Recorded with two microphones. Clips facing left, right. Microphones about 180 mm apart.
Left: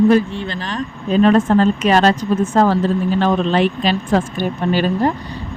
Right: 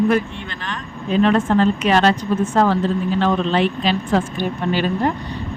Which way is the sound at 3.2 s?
40° left (ahead or behind).